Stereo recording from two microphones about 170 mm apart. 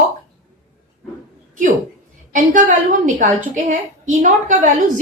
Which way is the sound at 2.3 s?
50° right (ahead or behind).